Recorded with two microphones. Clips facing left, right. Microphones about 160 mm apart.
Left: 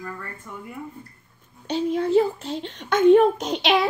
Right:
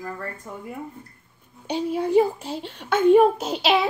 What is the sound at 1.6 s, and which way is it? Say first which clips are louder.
A woman's voice: left 1 dB; 10° right (ahead or behind).